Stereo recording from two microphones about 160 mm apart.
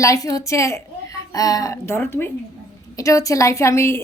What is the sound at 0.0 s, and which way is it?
A woman's voice, 20° left (ahead or behind).